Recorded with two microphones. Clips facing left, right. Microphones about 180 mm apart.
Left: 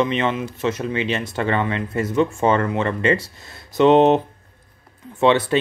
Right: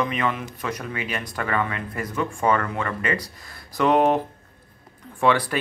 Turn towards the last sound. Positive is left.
turn(degrees=25)  # may be behind; listen again after turning